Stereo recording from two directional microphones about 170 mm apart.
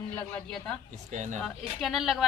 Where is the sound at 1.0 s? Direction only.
45° right (ahead or behind).